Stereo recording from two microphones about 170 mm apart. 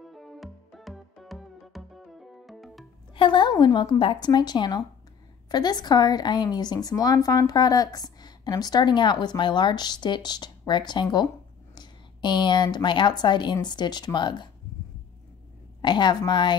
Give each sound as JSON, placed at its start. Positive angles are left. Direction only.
{"t": 0.0, "sound": "music", "side_deg": 0}
{"t": 3.2, "sound": "speech", "side_deg": 30}
{"t": 15.8, "sound": "speech", "side_deg": 25}